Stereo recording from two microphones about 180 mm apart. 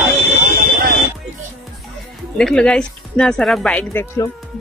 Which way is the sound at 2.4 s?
5° left (ahead or behind).